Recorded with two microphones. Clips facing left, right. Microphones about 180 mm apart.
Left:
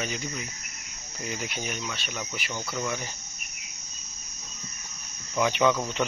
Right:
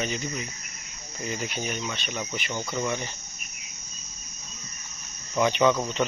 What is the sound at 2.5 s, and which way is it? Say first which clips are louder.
Speech: right 3 dB; 10° right (ahead or behind).